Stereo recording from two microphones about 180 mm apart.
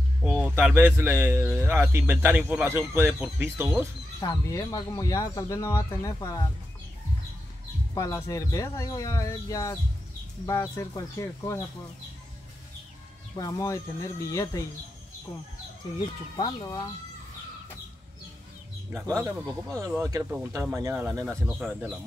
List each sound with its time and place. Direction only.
0.2 s a man's voice: 5° right (ahead or behind)
4.2 s speech: 20° left (ahead or behind)
7.9 s speech: 15° left (ahead or behind)
13.4 s speech: 20° left (ahead or behind)
16.3 s speech: 20° left (ahead or behind)
19.1 s a man's voice: 15° right (ahead or behind)